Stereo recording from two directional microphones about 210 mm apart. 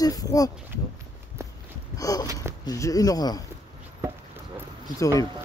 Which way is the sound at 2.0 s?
15° left (ahead or behind).